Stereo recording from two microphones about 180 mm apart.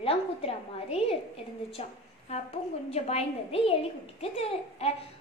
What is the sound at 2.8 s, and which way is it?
A woman's voice, 35° left (ahead or behind).